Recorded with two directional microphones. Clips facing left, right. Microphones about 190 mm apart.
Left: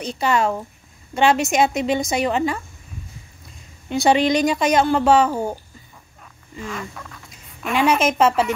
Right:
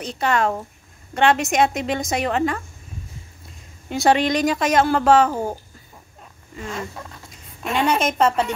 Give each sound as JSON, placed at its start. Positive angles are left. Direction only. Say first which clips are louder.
{"t": 0.0, "sound": "a woman's voice", "louder": "left 1 dB", "side_deg": 0}
{"t": 3.9, "sound": "a woman's voice", "louder": "left 1 dB", "side_deg": 0}
{"t": 6.6, "sound": "speech", "louder": "right 1 dB", "side_deg": -30}
{"t": 8.0, "sound": "a woman's voice", "louder": "left 2 dB", "side_deg": 5}